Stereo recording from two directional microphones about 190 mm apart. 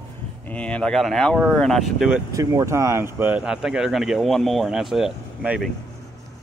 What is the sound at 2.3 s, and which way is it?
Speech, 15° right (ahead or behind).